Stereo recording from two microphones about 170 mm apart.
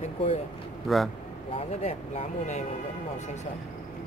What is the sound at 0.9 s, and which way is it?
Speech, centre (ahead or behind).